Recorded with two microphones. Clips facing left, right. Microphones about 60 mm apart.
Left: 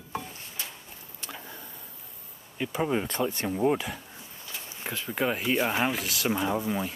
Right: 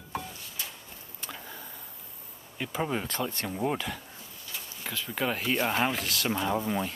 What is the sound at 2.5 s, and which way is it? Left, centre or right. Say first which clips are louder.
Speech: left 3 dB; centre.